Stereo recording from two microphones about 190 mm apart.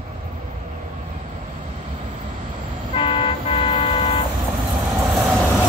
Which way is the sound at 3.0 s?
25° left (ahead or behind).